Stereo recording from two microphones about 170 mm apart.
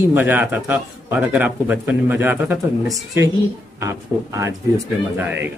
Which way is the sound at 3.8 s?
15° right (ahead or behind).